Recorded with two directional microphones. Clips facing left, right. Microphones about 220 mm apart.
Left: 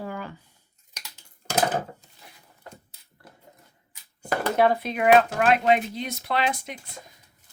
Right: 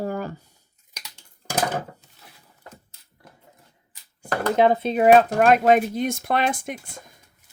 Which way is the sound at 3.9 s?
5° left (ahead or behind).